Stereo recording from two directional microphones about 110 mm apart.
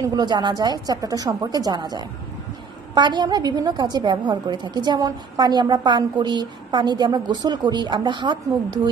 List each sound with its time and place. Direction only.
0.0 s a woman's voice: 40° right (ahead or behind)